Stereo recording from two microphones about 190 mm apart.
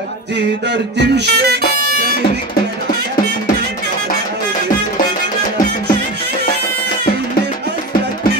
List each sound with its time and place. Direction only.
0.7 s music: 65° right (ahead or behind)